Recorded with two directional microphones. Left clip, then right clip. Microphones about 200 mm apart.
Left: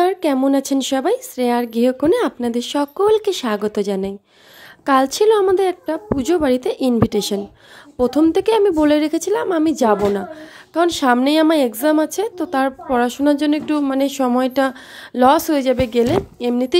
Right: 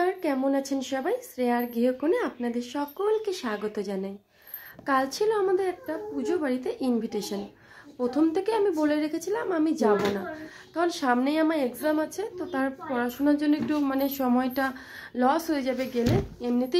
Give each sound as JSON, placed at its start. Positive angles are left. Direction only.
{"t": 0.0, "sound": "a woman's voice", "side_deg": 45}